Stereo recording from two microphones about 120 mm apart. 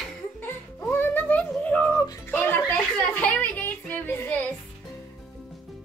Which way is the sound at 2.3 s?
15° left (ahead or behind).